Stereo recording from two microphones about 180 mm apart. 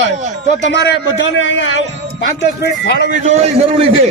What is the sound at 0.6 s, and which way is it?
A man's voice, 80° left.